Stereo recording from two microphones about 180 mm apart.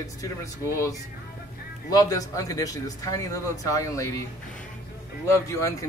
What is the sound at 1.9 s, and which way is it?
Speech, 20° left (ahead or behind).